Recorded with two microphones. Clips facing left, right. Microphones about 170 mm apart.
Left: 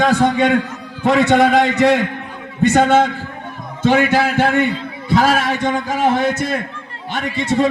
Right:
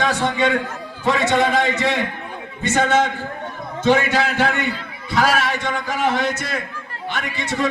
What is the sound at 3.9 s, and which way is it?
A man's voice, 55° left (ahead or behind).